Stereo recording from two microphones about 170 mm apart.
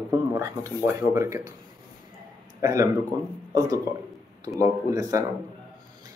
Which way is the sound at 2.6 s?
20° right (ahead or behind).